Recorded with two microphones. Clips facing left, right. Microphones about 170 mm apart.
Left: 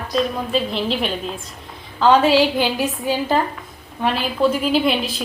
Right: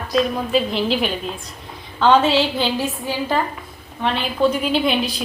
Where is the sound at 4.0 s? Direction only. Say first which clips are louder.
Even; 5° left (ahead or behind).